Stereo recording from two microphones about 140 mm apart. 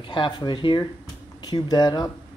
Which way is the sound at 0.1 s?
35° left (ahead or behind).